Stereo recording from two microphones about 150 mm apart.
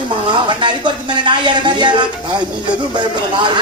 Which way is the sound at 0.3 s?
30° right (ahead or behind).